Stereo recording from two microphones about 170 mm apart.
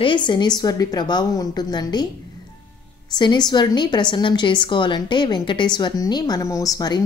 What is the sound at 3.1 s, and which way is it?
Speech, 25° left (ahead or behind).